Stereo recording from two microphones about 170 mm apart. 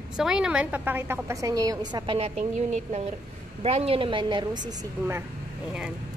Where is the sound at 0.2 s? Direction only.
5° right (ahead or behind).